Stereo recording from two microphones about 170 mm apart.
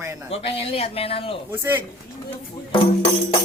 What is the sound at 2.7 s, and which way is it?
Speech, 35° left (ahead or behind).